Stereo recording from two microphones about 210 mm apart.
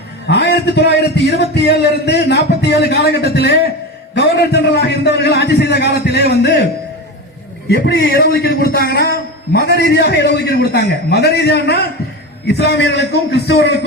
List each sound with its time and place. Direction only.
0.3 s a man's voice: 55° left (ahead or behind)
7.7 s a man's voice: 50° left (ahead or behind)